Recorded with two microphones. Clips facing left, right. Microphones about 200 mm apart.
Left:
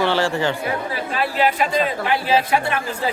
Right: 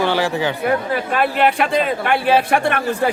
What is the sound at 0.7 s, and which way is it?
Speech, 55° right (ahead or behind).